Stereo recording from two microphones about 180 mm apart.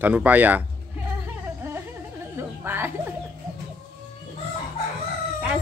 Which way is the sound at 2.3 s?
10° right (ahead or behind).